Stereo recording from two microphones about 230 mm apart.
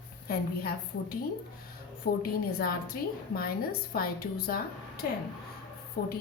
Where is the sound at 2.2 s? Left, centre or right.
Left.